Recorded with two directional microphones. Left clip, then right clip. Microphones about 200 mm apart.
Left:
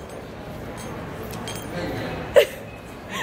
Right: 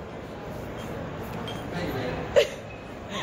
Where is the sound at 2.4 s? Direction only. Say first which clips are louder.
Left 5 dB; 50° left (ahead or behind).